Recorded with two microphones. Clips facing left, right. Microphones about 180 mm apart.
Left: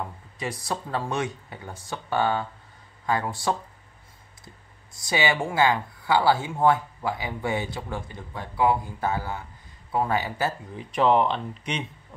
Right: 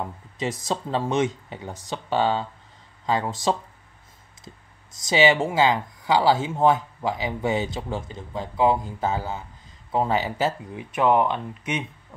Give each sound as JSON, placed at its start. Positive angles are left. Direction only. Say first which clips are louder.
{"t": 0.4, "sound": "speech", "louder": "right 4 dB", "side_deg": -20}
{"t": 4.9, "sound": "speech", "louder": "right 6 dB", "side_deg": -20}